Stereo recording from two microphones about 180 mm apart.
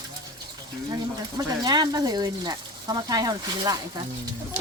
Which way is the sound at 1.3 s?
20° right (ahead or behind).